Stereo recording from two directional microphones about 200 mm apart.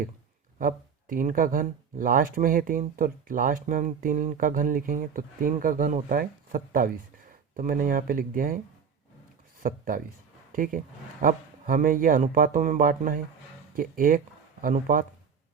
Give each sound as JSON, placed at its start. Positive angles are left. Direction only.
{"t": 0.6, "sound": "speech", "side_deg": -45}
{"t": 9.6, "sound": "speech", "side_deg": -45}